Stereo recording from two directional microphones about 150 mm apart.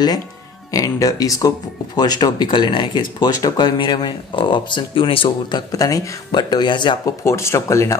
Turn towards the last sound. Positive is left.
turn(degrees=20)  # may be behind; listen again after turning